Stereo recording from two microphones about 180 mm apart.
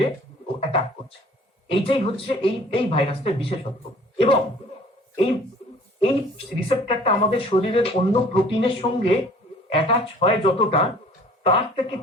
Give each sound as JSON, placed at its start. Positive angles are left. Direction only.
{"t": 0.0, "sound": "a sound", "side_deg": 30}
{"t": 1.6, "sound": "speech", "side_deg": 30}
{"t": 6.0, "sound": "a woman's voice", "side_deg": 30}